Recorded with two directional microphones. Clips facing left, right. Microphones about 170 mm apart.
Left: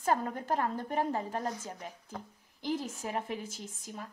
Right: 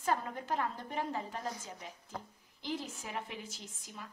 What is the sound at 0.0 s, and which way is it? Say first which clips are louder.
A woman's voice: left 4 dB; 45° left (ahead or behind).